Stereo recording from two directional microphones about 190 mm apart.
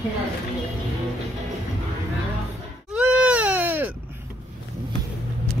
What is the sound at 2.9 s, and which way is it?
Baby cry, 5° right (ahead or behind).